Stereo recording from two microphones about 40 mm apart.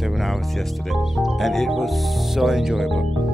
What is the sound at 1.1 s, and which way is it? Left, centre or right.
Music, centre.